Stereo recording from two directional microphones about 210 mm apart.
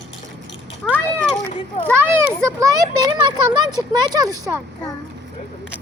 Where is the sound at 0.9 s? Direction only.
5° left (ahead or behind).